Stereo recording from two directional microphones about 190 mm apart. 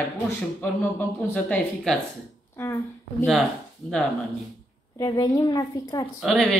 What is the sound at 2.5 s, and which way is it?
Speech, 10° left (ahead or behind).